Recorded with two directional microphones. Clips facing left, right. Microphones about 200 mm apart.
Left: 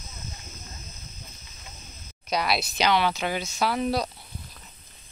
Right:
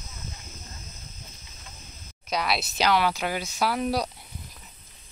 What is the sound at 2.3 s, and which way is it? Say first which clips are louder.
Speech: left 1 dB; centre (ahead or behind).